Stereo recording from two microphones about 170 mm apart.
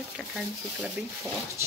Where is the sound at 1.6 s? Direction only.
15° right (ahead or behind).